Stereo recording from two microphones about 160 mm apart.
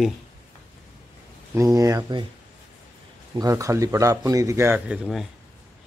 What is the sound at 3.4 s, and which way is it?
Speech, 20° right (ahead or behind).